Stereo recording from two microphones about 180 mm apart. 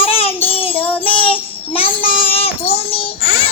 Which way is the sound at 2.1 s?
30° left (ahead or behind).